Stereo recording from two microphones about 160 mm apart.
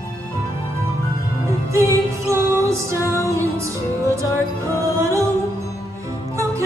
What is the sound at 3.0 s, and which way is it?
Music, 15° left (ahead or behind).